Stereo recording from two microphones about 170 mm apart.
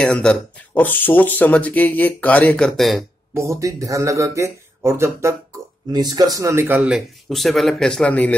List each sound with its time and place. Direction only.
0.0 s speech: 5° left (ahead or behind)
3.3 s speech: 15° right (ahead or behind); by 8.4 s 10° left (ahead or behind)